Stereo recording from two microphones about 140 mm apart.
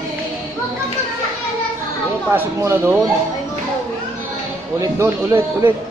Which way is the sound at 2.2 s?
15° right (ahead or behind).